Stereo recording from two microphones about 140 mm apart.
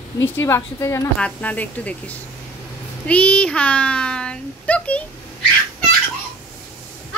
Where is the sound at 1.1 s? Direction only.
10° left (ahead or behind).